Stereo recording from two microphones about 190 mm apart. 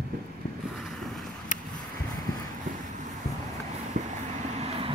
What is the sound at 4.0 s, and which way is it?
Vehicle, 40° right (ahead or behind).